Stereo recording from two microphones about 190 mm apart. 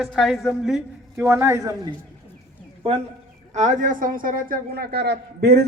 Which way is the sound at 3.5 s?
40° right (ahead or behind).